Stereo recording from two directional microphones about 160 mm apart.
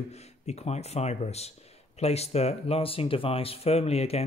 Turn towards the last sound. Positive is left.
turn(degrees=40)  # may be behind; listen again after turning